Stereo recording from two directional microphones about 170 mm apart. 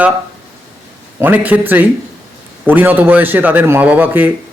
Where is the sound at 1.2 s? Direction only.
10° right (ahead or behind).